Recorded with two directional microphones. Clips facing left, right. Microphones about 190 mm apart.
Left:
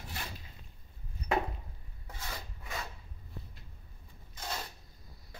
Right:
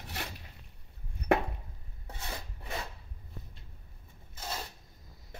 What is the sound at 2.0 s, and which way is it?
Rub, 25° right (ahead or behind).